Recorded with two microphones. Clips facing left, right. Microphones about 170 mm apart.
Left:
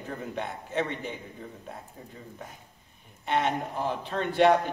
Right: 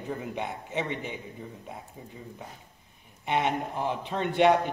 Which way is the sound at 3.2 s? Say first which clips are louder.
Even; 15° right (ahead or behind).